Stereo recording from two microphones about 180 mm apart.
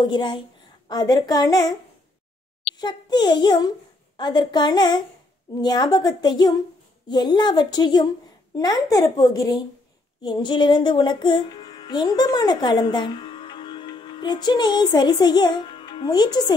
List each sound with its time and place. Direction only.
0.0 s a woman's voice: 25° left (ahead or behind)
2.8 s a woman's voice: 25° left (ahead or behind)
10.2 s music: 25° left (ahead or behind)